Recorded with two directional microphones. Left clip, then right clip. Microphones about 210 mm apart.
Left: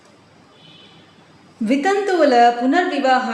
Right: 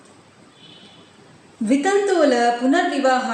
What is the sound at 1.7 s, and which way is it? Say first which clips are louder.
A woman's voice: even; 30° left (ahead or behind).